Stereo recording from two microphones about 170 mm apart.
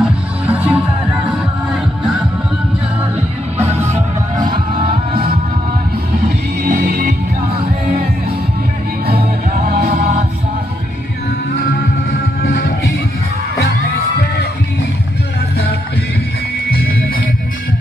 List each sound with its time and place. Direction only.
0.0 s music: 10° right (ahead or behind)
3.8 s music: 45° right (ahead or behind)
6.6 s music: 65° right (ahead or behind)
9.0 s music: 65° right (ahead or behind)
11.6 s music: 65° left (ahead or behind)